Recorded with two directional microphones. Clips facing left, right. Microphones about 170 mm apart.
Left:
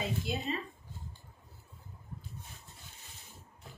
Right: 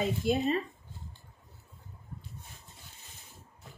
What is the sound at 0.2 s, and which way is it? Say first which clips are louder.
Speech: right 8 dB; 50° right (ahead or behind).